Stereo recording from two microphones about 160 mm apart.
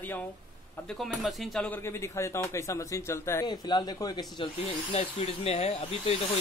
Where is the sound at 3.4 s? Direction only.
25° left (ahead or behind).